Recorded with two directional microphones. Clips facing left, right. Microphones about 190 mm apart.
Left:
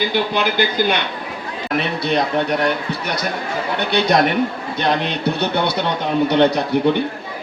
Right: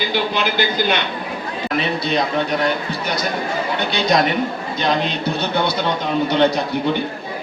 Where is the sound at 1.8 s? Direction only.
60° left (ahead or behind).